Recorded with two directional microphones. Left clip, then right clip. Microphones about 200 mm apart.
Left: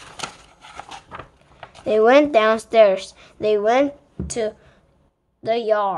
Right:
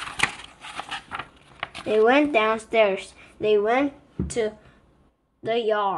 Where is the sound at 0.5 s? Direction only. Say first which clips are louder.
Right 3 dB; 10° left (ahead or behind).